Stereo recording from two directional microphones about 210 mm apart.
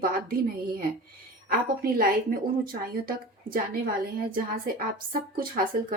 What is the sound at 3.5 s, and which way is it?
A woman's voice, 45° right (ahead or behind).